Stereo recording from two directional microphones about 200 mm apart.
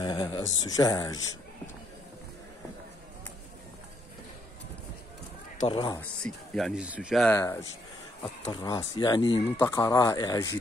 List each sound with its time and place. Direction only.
0.0 s speech: 20° left (ahead or behind)
5.7 s speech: 25° left (ahead or behind)
5.9 s speech: 5° left (ahead or behind)
7.2 s speech: 15° left (ahead or behind)